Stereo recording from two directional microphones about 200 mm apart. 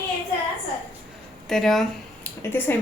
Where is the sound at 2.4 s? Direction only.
10° left (ahead or behind).